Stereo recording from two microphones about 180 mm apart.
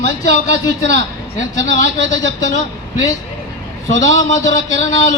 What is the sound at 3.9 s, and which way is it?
A man's voice, 40° left (ahead or behind).